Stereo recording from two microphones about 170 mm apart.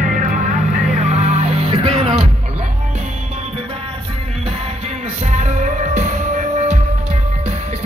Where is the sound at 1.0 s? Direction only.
40° right (ahead or behind).